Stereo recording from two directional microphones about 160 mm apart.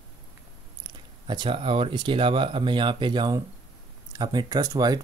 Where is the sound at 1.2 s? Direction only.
30° right (ahead or behind).